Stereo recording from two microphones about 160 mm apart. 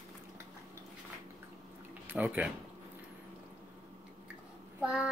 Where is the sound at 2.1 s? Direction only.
10° right (ahead or behind).